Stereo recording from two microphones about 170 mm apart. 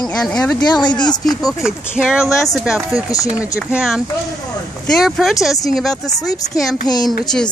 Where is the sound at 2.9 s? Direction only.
20° left (ahead or behind).